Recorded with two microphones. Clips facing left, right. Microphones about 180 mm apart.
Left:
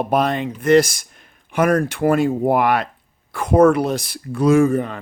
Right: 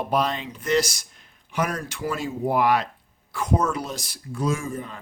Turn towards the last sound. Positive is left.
turn(degrees=70)  # may be behind; listen again after turning